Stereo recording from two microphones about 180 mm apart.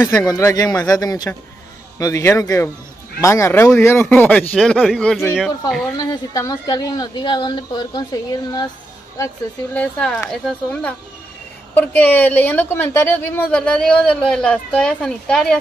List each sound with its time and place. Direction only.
0.2 s a woman's voice: 20° left (ahead or behind)
5.9 s a woman's voice: 20° left (ahead or behind)
9.8 s a woman's voice: 5° left (ahead or behind)